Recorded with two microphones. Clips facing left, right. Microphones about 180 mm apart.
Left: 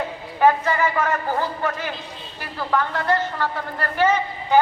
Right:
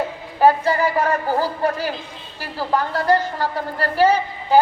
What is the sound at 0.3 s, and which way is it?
A man's voice, 35° right (ahead or behind).